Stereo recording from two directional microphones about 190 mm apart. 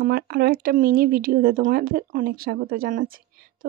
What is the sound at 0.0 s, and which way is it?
Speech, 50° right (ahead or behind).